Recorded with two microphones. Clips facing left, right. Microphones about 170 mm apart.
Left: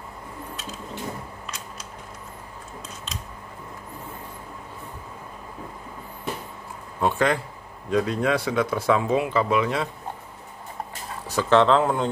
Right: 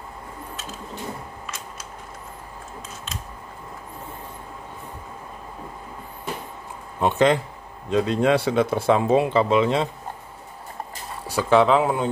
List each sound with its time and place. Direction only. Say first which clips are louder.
7.0 s speech: right 4 dB; 20° right (ahead or behind)
11.2 s speech: right 1 dB; 10° right (ahead or behind)